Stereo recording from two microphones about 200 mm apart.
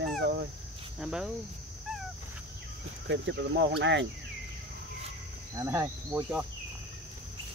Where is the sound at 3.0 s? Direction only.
60° right (ahead or behind).